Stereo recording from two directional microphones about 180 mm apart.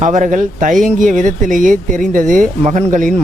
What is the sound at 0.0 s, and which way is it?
Speech, 45° right (ahead or behind).